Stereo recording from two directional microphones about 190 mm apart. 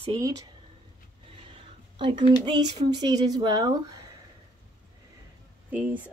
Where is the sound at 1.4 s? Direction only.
25° right (ahead or behind).